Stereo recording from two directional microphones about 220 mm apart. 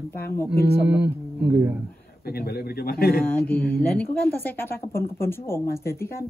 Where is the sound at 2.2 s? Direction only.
45° left (ahead or behind).